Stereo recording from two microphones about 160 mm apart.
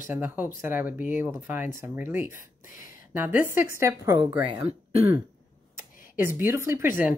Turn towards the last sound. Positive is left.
turn(degrees=-15)  # may be behind; listen again after turning